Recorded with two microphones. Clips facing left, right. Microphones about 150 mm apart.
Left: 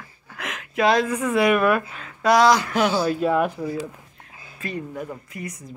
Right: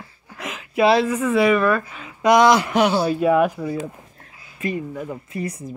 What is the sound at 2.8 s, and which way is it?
Speech, 10° right (ahead or behind).